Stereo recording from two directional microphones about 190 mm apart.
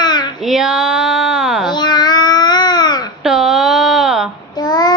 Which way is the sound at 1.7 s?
20° left (ahead or behind).